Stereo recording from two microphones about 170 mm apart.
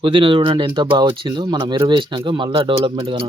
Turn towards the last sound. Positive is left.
turn(degrees=-30)  # may be behind; listen again after turning